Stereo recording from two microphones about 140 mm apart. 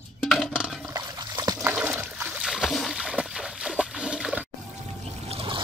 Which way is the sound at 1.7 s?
10° right (ahead or behind).